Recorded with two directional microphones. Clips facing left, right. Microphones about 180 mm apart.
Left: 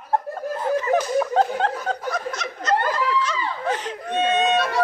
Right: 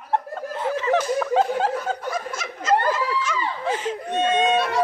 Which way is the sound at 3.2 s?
10° right (ahead or behind).